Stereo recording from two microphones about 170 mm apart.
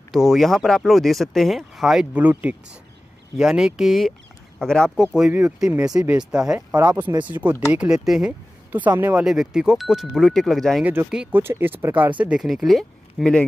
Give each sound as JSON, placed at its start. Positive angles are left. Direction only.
{"t": 0.1, "sound": "speech", "side_deg": 0}
{"t": 5.4, "sound": "speech", "side_deg": -15}
{"t": 5.9, "sound": "speech", "side_deg": -5}
{"t": 6.7, "sound": "speech", "side_deg": -20}
{"t": 7.2, "sound": "speech", "side_deg": -10}
{"t": 10.8, "sound": "speech", "side_deg": -10}